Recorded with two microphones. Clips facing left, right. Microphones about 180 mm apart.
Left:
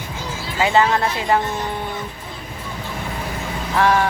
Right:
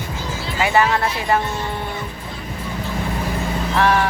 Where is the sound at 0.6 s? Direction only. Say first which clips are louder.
Left 1 dB; 20° left (ahead or behind).